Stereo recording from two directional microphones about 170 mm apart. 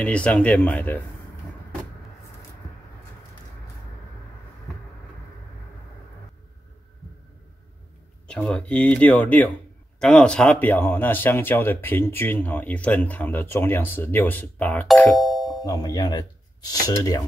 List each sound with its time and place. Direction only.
0.0 s speech: 5° left (ahead or behind)
8.3 s speech: 5° left (ahead or behind)
15.6 s speech: 20° left (ahead or behind)